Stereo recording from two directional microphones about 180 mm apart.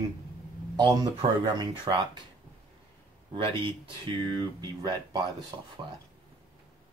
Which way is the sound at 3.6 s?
25° right (ahead or behind).